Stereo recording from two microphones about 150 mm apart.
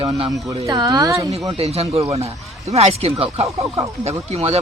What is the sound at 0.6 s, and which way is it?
Speech, 25° right (ahead or behind).